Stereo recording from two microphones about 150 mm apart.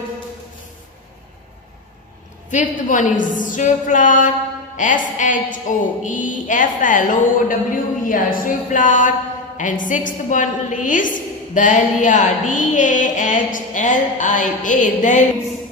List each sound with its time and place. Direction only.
2.5 s a woman's voice: 55° left (ahead or behind)